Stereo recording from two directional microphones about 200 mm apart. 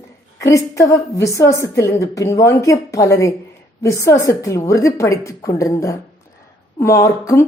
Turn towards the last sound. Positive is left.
turn(degrees=15)  # may be behind; listen again after turning